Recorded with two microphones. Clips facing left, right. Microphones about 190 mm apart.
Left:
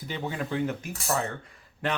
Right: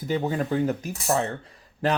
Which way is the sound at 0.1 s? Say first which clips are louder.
Right 7 dB; 40° right (ahead or behind).